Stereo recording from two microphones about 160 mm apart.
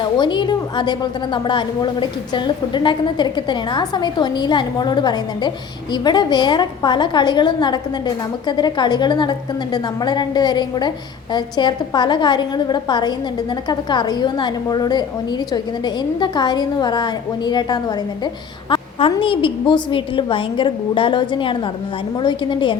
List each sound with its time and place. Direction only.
0.0 s a woman's voice: 30° left (ahead or behind)